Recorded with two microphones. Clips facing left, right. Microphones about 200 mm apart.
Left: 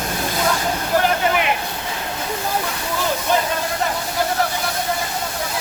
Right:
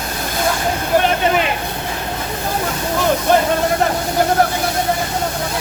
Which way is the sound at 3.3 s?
55° right (ahead or behind).